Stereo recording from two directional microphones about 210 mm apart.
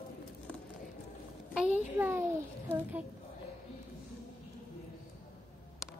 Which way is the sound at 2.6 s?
10° right (ahead or behind).